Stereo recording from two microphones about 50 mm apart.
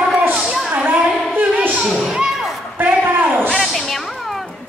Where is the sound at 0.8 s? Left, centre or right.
Right.